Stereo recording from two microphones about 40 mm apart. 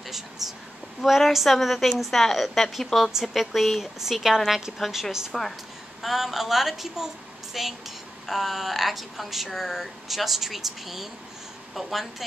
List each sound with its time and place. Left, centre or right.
0.0 s speech: centre
4.7 s a woman's voice: centre
6.0 s a woman's voice: centre